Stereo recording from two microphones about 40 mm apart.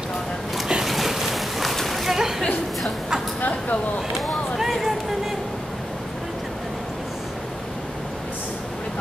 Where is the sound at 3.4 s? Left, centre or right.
Left.